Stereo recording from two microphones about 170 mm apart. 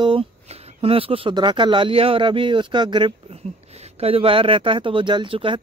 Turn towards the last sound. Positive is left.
turn(degrees=-30)  # may be behind; listen again after turning